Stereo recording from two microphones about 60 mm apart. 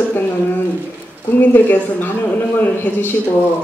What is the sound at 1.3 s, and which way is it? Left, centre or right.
A woman's voice, left.